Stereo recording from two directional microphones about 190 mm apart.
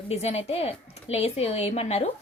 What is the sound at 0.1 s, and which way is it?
Speech, 35° left (ahead or behind).